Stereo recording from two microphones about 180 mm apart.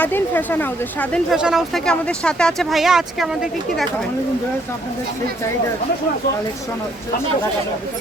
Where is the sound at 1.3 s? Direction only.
5° right (ahead or behind).